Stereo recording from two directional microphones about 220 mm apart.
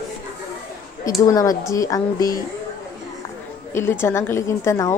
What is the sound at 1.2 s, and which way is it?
A woman's voice, 15° left (ahead or behind).